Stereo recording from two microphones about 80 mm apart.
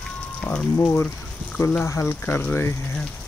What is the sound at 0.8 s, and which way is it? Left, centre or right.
Speech, left.